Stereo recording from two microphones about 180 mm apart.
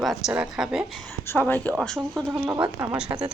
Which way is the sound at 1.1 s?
10° left (ahead or behind).